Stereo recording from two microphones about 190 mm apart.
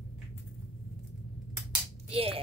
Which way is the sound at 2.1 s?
30° right (ahead or behind).